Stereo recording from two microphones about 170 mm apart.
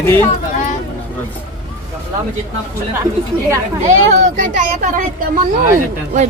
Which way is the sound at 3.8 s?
45° right (ahead or behind).